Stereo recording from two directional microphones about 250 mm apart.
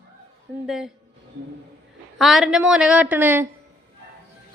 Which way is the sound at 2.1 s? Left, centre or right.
Centre.